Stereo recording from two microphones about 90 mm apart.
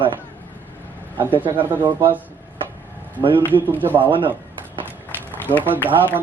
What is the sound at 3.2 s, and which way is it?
Speech, 70° right (ahead or behind).